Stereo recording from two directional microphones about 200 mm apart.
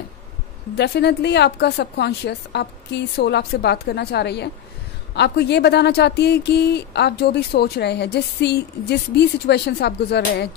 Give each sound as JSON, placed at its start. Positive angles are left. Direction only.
{"t": 0.7, "sound": "speech", "side_deg": 55}